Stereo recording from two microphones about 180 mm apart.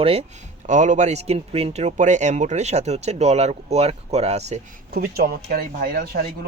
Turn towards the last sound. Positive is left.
turn(degrees=-55)  # may be behind; listen again after turning